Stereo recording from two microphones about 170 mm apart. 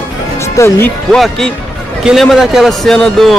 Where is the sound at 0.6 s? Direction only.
20° left (ahead or behind).